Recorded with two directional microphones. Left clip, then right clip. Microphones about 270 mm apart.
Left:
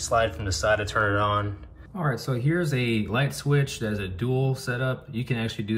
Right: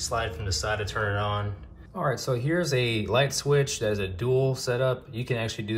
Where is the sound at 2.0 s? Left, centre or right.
Centre.